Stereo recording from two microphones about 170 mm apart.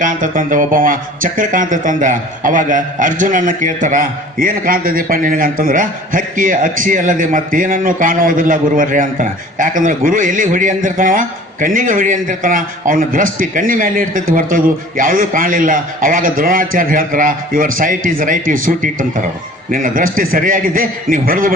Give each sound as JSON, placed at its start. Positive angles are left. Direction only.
{"t": 0.0, "sound": "speech", "side_deg": -50}